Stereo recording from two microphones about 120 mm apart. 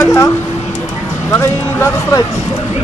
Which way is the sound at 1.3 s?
25° left (ahead or behind).